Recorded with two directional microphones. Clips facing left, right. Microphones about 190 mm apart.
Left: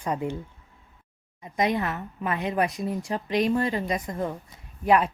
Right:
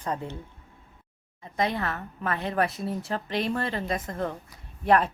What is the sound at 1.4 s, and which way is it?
A woman's voice, 20° left (ahead or behind).